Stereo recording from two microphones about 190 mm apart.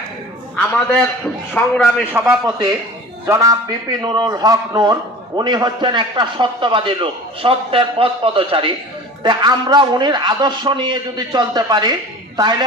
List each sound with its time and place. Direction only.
0.5 s a man's voice: 10° left (ahead or behind)
2.1 s a man's voice: 5° right (ahead or behind)
3.2 s a man's voice: 20° right (ahead or behind)